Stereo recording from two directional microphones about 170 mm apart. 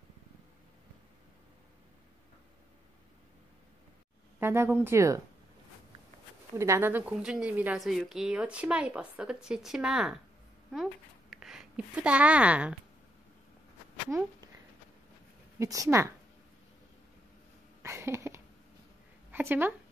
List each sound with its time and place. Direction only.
4.4 s speech: 15° right (ahead or behind)
6.5 s a woman's voice: 15° right (ahead or behind)
15.6 s speech: 20° right (ahead or behind)
17.8 s a sound: 15° right (ahead or behind)
19.3 s speech: 10° right (ahead or behind)